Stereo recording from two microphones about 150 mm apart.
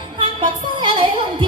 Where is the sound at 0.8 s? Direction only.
30° right (ahead or behind).